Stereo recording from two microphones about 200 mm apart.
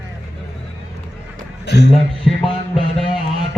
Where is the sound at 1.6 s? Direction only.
55° left (ahead or behind).